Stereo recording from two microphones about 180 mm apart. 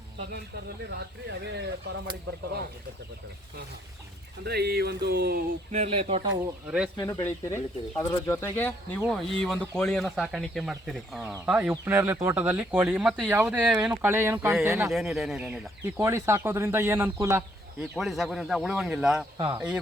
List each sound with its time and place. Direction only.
0.9 s speech: 70° right (ahead or behind)
4.4 s a sound: 65° right (ahead or behind)
5.7 s speech: 35° right (ahead or behind)
6.7 s speech: 5° right (ahead or behind)
6.9 s speech: 15° left (ahead or behind)
9.0 s speech: centre (ahead or behind); by 14.9 s 15° right (ahead or behind)
14.9 s speech: centre (ahead or behind)
16.0 s speech: 15° right (ahead or behind)
17.7 s speech: centre (ahead or behind)
19.4 s speech: 25° right (ahead or behind)